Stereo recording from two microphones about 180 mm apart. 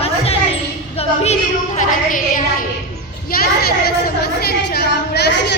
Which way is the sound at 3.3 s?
60° left (ahead or behind).